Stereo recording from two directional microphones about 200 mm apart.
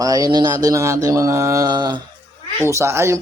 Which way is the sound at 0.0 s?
20° right (ahead or behind).